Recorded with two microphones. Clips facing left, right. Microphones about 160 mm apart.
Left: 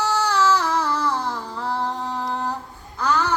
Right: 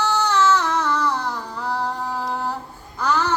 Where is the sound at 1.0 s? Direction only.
30° left (ahead or behind).